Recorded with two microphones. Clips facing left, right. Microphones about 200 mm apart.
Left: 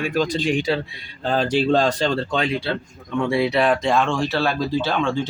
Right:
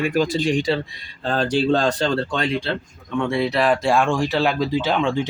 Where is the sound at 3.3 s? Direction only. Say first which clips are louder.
Left 1 dB; centre (ahead or behind).